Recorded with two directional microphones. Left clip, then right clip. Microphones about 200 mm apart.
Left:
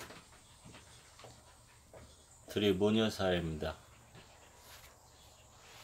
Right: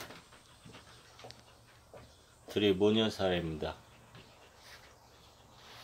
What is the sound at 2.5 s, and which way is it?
Speech, 5° right (ahead or behind).